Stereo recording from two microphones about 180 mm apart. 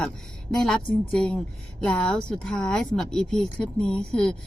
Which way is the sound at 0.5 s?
5° left (ahead or behind).